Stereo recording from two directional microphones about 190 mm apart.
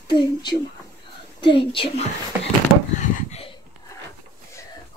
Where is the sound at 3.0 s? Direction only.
35° left (ahead or behind).